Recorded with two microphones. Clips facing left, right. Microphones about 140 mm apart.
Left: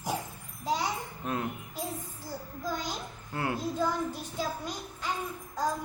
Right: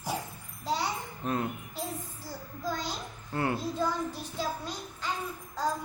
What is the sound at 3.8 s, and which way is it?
Child singing, 15° left (ahead or behind).